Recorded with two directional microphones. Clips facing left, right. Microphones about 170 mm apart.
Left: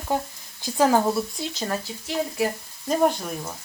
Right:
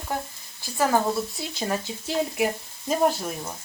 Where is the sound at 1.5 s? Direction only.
15° right (ahead or behind).